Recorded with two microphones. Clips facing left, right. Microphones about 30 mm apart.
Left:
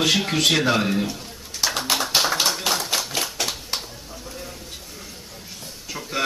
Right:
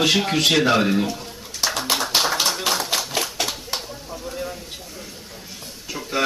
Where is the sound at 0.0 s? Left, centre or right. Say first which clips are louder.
Right 1 dB; centre.